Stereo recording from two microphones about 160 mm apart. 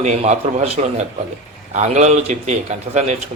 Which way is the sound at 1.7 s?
50° right (ahead or behind).